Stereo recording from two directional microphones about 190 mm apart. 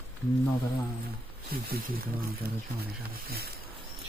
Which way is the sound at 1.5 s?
50° right (ahead or behind).